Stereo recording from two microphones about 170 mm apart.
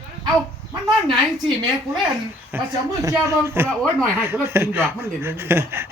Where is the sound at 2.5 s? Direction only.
10° right (ahead or behind).